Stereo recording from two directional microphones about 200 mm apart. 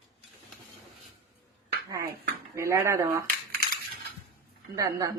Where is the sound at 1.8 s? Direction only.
15° right (ahead or behind).